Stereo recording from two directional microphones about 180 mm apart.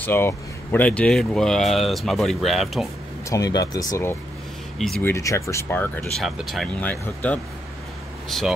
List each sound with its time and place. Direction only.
0.0 s speech: 10° left (ahead or behind)
3.3 s speech: 20° left (ahead or behind)
4.7 s speech: 5° left (ahead or behind)
5.1 s speech: 15° left (ahead or behind)
6.2 s speech: centre (ahead or behind)